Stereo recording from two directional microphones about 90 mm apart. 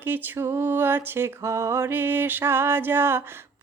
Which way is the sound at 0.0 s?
20° right (ahead or behind).